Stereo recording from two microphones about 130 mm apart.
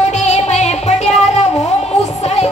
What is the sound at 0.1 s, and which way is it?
Music, 60° left (ahead or behind).